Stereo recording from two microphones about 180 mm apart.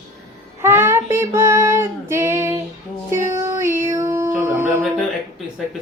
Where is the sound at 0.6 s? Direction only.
10° right (ahead or behind).